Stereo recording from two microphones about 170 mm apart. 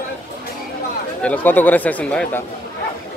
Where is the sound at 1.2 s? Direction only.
10° left (ahead or behind).